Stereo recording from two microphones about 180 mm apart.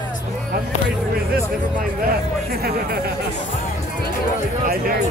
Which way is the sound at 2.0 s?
60° right (ahead or behind).